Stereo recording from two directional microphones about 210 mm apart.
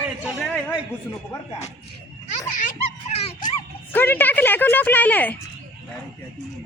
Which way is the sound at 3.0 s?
35° left (ahead or behind).